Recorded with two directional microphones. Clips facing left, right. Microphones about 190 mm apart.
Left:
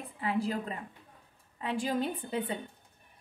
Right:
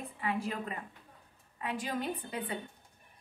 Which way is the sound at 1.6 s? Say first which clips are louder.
Left 4 dB; 30° left (ahead or behind).